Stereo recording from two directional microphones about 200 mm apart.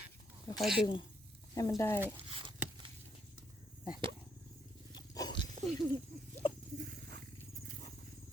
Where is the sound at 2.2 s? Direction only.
25° right (ahead or behind).